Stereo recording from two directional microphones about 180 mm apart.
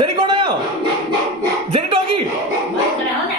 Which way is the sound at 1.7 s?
30° right (ahead or behind).